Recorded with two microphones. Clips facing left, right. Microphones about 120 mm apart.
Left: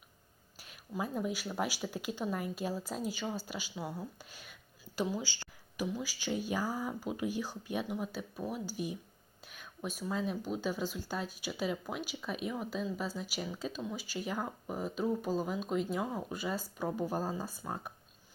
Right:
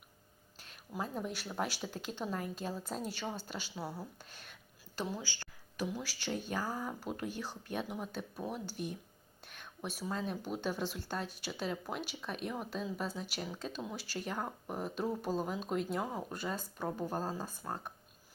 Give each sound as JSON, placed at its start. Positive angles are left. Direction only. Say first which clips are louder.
{"t": 0.6, "sound": "speech", "louder": "left 2 dB", "side_deg": 10}
{"t": 5.2, "sound": "a sound", "louder": "left 3 dB", "side_deg": 15}
{"t": 5.8, "sound": "speech", "louder": "left 2 dB", "side_deg": 0}